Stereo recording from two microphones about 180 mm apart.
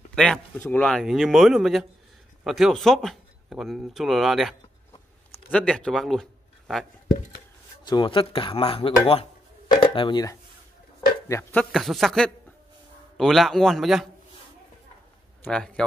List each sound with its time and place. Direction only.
0.1 s speech: 5° left (ahead or behind)
7.8 s speech: 25° left (ahead or behind)
11.2 s speech: 15° left (ahead or behind)
11.7 s speech: centre (ahead or behind)
15.4 s speech: 5° left (ahead or behind)